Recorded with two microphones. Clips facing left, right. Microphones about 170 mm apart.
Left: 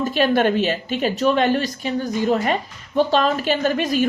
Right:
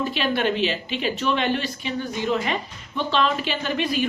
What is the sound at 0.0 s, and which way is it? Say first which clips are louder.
Speech: left 5 dB; 45° left (ahead or behind).